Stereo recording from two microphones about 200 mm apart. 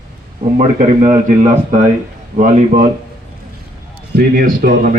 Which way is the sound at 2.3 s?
40° right (ahead or behind).